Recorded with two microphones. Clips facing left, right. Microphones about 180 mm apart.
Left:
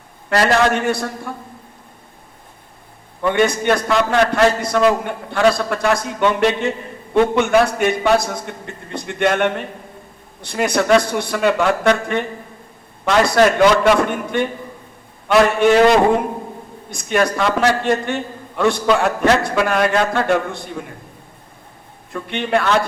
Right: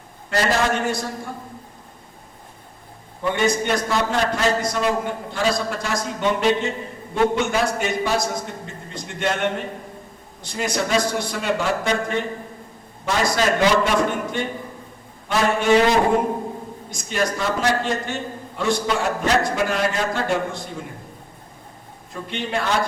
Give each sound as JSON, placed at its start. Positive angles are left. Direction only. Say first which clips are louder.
{"t": 0.3, "sound": "a man's voice", "louder": "left 5 dB", "side_deg": 65}
{"t": 3.2, "sound": "a man's voice", "louder": "left 4 dB", "side_deg": 65}
{"t": 22.1, "sound": "a man's voice", "louder": "left 7 dB", "side_deg": 60}